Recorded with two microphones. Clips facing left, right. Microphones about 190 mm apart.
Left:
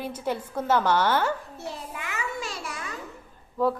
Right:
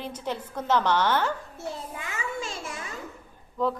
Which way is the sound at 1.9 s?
25° right (ahead or behind).